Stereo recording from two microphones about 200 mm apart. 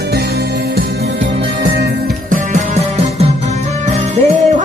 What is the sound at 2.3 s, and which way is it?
Music, 35° right (ahead or behind).